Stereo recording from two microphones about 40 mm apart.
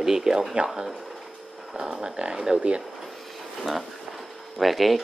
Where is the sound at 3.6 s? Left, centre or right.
Centre.